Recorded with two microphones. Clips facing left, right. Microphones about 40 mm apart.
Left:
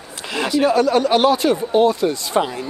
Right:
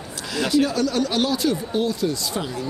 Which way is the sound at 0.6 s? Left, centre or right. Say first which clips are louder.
Left 6 dB; left.